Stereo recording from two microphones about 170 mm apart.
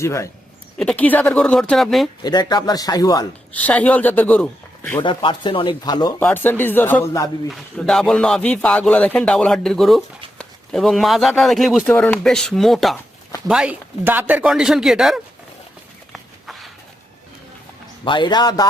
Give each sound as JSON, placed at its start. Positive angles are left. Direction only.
{"t": 0.0, "sound": "speech", "side_deg": 15}
{"t": 2.2, "sound": "speech", "side_deg": 25}
{"t": 3.5, "sound": "a man's voice", "side_deg": 10}
{"t": 5.0, "sound": "speech", "side_deg": 30}
{"t": 6.1, "sound": "speech", "side_deg": 10}
{"t": 7.5, "sound": "speech", "side_deg": 0}
{"t": 16.1, "sound": "a sound", "side_deg": 0}
{"t": 18.0, "sound": "speech", "side_deg": 30}